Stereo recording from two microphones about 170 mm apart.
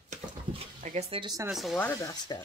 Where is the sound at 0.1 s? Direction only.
35° right (ahead or behind).